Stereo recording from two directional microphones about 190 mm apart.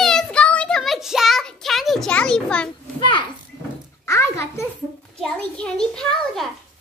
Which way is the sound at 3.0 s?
25° left (ahead or behind).